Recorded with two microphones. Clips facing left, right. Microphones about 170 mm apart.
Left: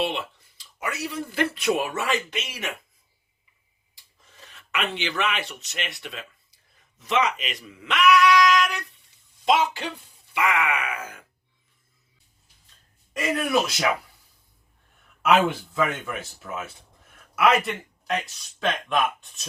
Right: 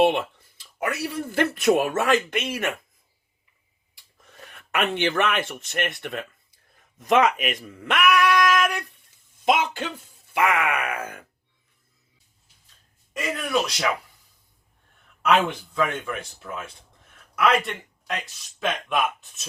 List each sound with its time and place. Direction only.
0.0 s speech: 55° right (ahead or behind)
3.9 s speech: 60° right (ahead or behind)
13.1 s speech: centre (ahead or behind)
15.2 s speech: 5° left (ahead or behind)